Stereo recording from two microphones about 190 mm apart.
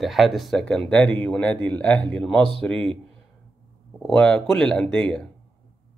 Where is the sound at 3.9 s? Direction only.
5° left (ahead or behind).